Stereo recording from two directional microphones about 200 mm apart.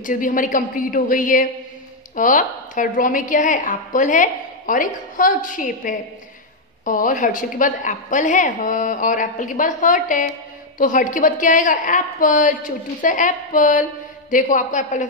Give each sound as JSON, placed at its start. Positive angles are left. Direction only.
{"t": 0.0, "sound": "a woman's voice", "side_deg": 40}